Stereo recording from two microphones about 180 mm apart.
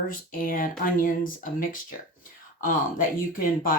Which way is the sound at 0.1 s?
50° left (ahead or behind).